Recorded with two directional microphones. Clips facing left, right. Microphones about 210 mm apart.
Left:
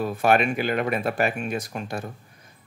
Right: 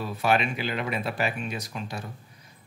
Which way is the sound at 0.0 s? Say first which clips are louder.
Left 4 dB; 50° left (ahead or behind).